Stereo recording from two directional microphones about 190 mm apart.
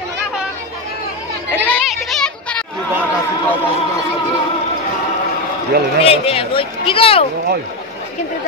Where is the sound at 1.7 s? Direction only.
Centre (ahead or behind).